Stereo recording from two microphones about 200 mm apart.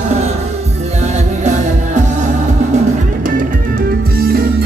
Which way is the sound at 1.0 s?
35° right (ahead or behind).